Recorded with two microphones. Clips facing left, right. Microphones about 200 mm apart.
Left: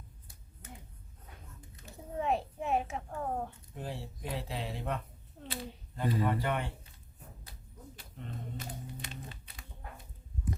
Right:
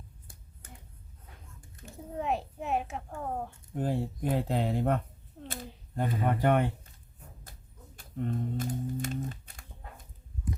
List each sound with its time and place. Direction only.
2.1 s a child's voice: centre (ahead or behind)
3.8 s speech: 50° right (ahead or behind)
5.4 s a sound: centre (ahead or behind)
6.0 s speech: 50° right (ahead or behind)
7.9 s typing: 45° right (ahead or behind)